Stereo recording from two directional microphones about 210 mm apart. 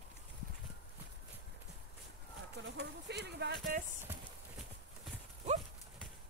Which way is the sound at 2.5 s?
55° right (ahead or behind).